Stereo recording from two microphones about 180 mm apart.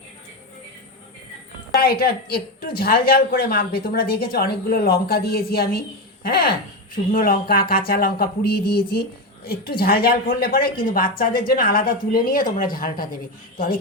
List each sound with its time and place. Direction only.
1.7 s a woman's voice: 60° left (ahead or behind)